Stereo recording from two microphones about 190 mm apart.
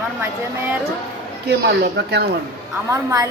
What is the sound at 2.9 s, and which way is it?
Speech, 15° right (ahead or behind).